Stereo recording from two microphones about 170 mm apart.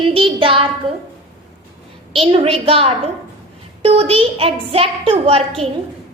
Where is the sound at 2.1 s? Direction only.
35° right (ahead or behind).